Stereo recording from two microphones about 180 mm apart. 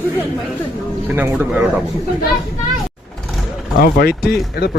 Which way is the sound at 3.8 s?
60° left (ahead or behind).